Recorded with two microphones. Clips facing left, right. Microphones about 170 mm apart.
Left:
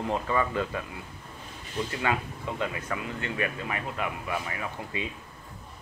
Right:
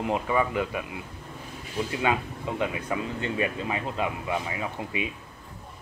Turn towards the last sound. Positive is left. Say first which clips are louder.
# right 3 dB
turn(degrees=-20)  # may be behind; listen again after turning